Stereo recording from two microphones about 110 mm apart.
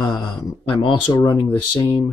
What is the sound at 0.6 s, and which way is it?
Speech, 45° left (ahead or behind).